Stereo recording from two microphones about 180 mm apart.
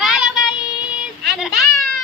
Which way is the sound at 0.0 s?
5° right (ahead or behind).